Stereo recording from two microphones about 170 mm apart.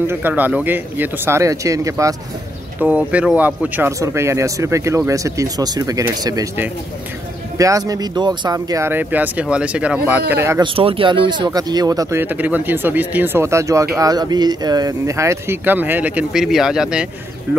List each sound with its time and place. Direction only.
0.0 s speech: 15° right (ahead or behind)
2.8 s speech: 10° right (ahead or behind)
10.6 s speech: 30° right (ahead or behind); by 17.1 s 5° right (ahead or behind)